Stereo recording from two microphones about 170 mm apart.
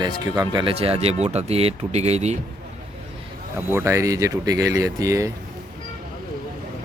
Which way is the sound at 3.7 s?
15° right (ahead or behind).